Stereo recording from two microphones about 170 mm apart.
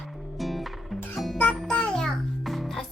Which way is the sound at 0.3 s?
Centre (ahead or behind).